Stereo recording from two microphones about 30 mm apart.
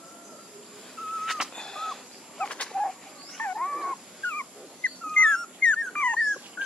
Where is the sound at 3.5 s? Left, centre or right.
Centre.